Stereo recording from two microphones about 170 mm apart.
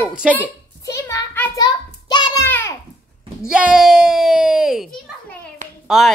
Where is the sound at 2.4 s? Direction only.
15° left (ahead or behind).